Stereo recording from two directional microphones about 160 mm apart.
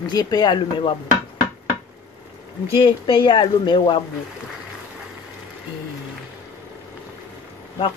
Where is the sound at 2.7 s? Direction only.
30° left (ahead or behind).